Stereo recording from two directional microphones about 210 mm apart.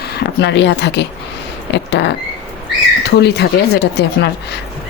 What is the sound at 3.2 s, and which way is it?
Speech, 50° left (ahead or behind).